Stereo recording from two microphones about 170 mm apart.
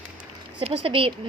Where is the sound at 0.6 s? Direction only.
30° right (ahead or behind).